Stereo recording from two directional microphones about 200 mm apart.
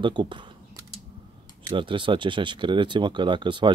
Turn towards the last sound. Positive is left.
turn(degrees=-25)  # may be behind; listen again after turning